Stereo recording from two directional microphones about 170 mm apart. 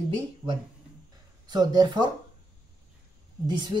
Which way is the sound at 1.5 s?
25° right (ahead or behind).